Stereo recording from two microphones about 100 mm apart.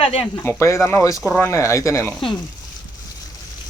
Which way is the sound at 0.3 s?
25° left (ahead or behind).